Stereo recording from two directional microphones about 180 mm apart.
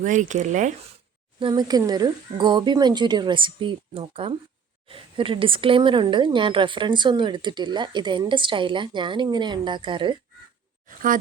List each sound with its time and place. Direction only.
0.0 s speech: 45° right (ahead or behind)
1.4 s speech: 25° right (ahead or behind)